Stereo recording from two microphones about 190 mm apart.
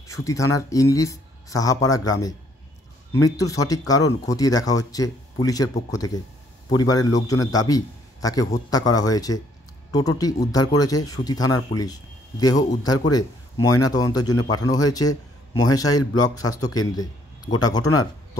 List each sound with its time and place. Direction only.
0.1 s a man's voice: 15° left (ahead or behind)